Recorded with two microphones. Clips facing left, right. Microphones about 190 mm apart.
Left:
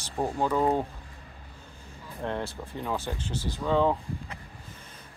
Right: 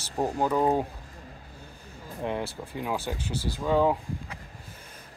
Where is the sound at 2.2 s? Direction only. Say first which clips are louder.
Right 1 dB; 10° right (ahead or behind).